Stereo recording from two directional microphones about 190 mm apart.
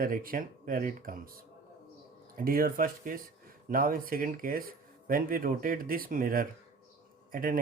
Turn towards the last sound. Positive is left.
turn(degrees=-45)  # may be behind; listen again after turning